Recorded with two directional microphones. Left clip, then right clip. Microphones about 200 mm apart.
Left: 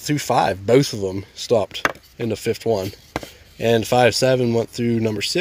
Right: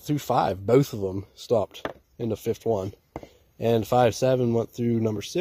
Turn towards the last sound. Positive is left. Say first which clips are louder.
# left 5 dB
turn(degrees=-20)  # may be behind; listen again after turning